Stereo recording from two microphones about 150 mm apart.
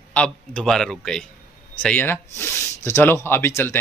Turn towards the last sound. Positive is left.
turn(degrees=15)  # may be behind; listen again after turning